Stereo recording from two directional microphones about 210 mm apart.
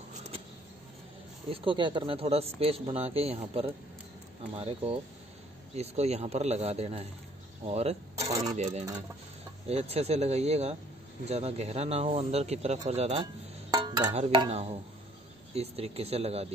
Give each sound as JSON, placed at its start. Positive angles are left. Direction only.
{"t": 1.5, "sound": "speech", "side_deg": -25}
{"t": 8.2, "sound": "speech", "side_deg": -15}
{"t": 8.5, "sound": "speech", "side_deg": -30}
{"t": 13.7, "sound": "a sound", "side_deg": -20}
{"t": 15.5, "sound": "speech", "side_deg": -30}